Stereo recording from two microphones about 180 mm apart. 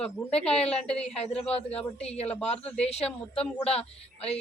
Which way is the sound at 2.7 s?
35° left (ahead or behind).